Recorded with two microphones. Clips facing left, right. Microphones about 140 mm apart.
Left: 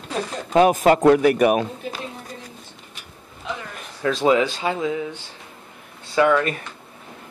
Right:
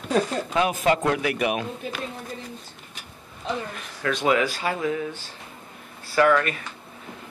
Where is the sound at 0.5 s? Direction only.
45° left (ahead or behind).